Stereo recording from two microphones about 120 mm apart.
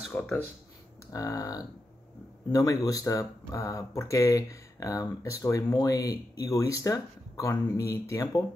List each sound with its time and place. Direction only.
0.1 s speech: 15° left (ahead or behind)
1.1 s speech: 30° left (ahead or behind)